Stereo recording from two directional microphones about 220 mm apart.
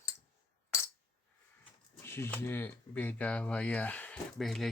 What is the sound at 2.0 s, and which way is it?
Speech, 10° left (ahead or behind).